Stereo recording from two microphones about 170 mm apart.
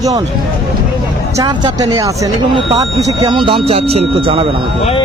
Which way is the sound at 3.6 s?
35° right (ahead or behind).